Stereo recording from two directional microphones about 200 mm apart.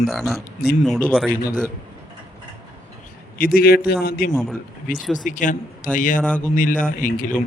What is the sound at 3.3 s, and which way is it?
A man's voice, 45° left (ahead or behind).